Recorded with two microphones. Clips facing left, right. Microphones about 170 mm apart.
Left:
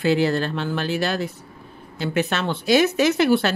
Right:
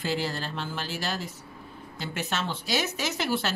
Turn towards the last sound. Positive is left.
turn(degrees=60)  # may be behind; listen again after turning